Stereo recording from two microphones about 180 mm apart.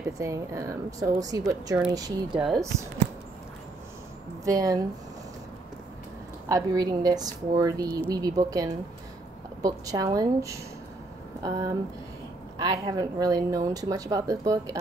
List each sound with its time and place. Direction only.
0.0 s a woman's voice: 15° right (ahead or behind)
4.5 s speech: 20° right (ahead or behind)
6.5 s speech: 20° right (ahead or behind)